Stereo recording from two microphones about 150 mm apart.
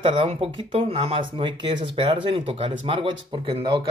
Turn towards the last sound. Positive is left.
turn(degrees=-30)  # may be behind; listen again after turning